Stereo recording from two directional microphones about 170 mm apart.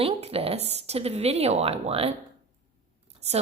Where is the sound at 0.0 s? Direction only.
35° right (ahead or behind).